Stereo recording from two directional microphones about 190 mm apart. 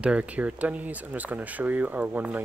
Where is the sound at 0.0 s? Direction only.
5° right (ahead or behind).